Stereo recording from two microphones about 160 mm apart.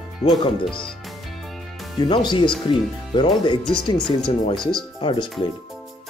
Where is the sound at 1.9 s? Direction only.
30° left (ahead or behind).